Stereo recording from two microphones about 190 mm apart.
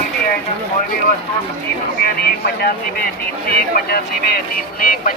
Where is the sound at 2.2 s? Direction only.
55° left (ahead or behind).